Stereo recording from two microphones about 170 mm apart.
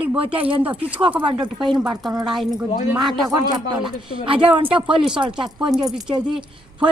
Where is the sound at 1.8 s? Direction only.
5° right (ahead or behind).